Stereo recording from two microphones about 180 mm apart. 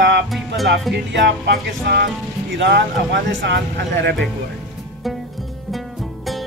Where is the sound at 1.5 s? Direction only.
60° right (ahead or behind).